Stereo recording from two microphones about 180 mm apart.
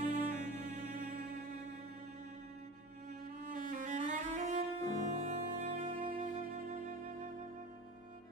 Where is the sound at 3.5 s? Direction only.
45° right (ahead or behind).